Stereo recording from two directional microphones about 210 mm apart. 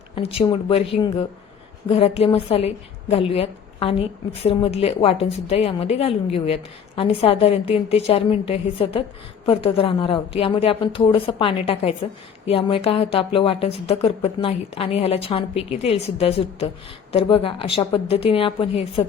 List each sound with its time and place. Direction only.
0.2 s speech: 25° left (ahead or behind)